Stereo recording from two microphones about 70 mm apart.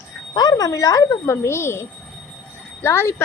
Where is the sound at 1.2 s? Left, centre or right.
Left.